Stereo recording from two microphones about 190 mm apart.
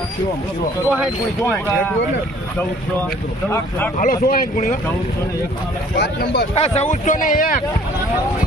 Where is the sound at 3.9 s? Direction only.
45° left (ahead or behind).